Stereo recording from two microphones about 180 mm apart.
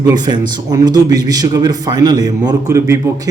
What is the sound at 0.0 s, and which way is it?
A man's voice, 25° right (ahead or behind).